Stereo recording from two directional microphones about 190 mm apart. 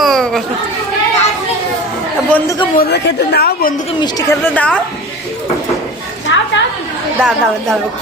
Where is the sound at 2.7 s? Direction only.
60° left (ahead or behind).